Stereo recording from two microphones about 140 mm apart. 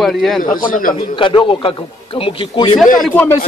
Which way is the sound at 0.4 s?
80° left.